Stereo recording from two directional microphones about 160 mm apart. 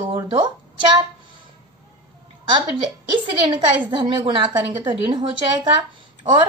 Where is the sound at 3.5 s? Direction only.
30° right (ahead or behind).